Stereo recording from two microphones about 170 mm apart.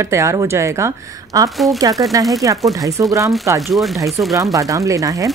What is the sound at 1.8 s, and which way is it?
A woman's voice, 20° right (ahead or behind).